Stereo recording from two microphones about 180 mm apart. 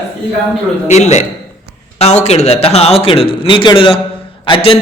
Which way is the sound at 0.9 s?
40° left (ahead or behind).